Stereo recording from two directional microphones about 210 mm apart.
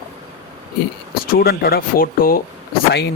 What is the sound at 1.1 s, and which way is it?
Speech, 45° left (ahead or behind).